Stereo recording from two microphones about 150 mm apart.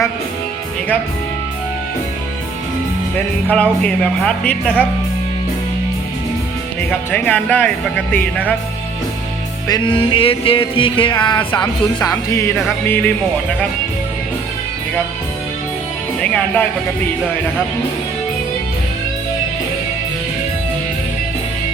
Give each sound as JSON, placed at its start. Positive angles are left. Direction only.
{"t": 3.5, "sound": "speech", "side_deg": 5}
{"t": 6.9, "sound": "speech", "side_deg": 10}
{"t": 9.6, "sound": "music", "side_deg": 30}
{"t": 12.1, "sound": "speech", "side_deg": 20}
{"t": 16.2, "sound": "speech", "side_deg": 5}